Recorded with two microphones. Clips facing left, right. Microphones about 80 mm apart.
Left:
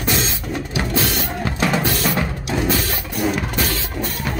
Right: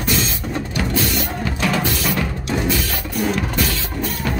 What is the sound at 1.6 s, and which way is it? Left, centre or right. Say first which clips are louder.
Music: left 2 dB; centre.